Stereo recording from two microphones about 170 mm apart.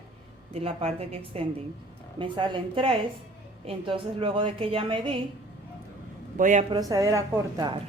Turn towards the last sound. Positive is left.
turn(degrees=-20)  # may be behind; listen again after turning